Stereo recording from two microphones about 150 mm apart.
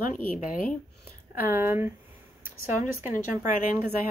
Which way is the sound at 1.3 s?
15° right (ahead or behind).